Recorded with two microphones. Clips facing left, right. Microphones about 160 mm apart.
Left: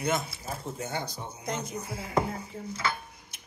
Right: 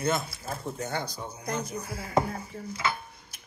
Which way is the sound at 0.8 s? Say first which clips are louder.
Right 2 dB; 20° left (ahead or behind).